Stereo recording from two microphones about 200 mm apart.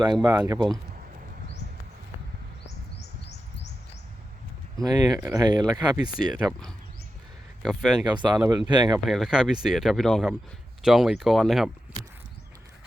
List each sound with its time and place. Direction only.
0.0 s speech: 20° right (ahead or behind)
4.8 s speech: 20° right (ahead or behind)
7.6 s speech: centre (ahead or behind)
8.0 s speech: 20° right (ahead or behind)
9.0 s speech: centre (ahead or behind)